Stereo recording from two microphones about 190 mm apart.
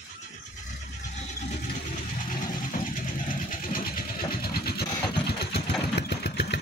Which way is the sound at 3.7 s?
50° left (ahead or behind).